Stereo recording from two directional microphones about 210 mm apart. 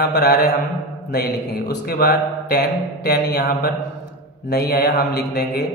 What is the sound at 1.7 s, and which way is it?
A man's voice, 45° left (ahead or behind).